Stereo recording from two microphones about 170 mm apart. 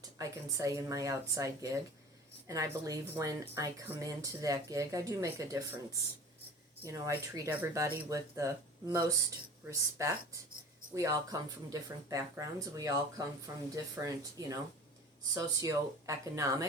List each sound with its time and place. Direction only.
0.2 s a woman's voice: 20° right (ahead or behind)
6.8 s a woman's voice: 15° right (ahead or behind)